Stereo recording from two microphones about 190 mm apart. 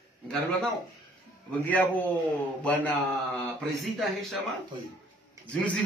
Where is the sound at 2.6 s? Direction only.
5° left (ahead or behind).